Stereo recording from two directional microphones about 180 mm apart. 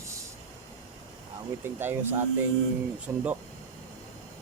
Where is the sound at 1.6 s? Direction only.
10° right (ahead or behind).